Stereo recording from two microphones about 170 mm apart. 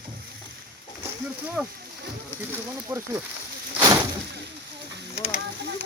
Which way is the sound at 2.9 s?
15° right (ahead or behind).